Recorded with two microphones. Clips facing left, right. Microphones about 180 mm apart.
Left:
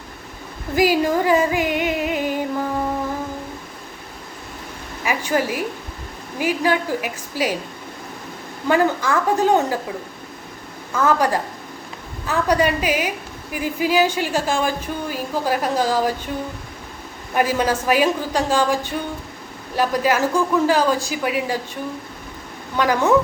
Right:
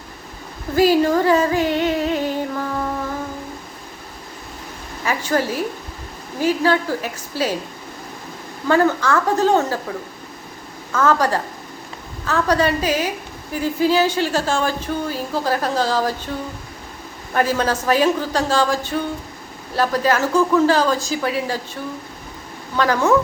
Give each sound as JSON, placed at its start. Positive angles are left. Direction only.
{"t": 0.8, "sound": "music", "side_deg": 15}
{"t": 5.3, "sound": "speech", "side_deg": 15}
{"t": 8.6, "sound": "speech", "side_deg": 15}
{"t": 10.9, "sound": "speech", "side_deg": 15}
{"t": 17.3, "sound": "speech", "side_deg": 15}
{"t": 22.8, "sound": "speech", "side_deg": 15}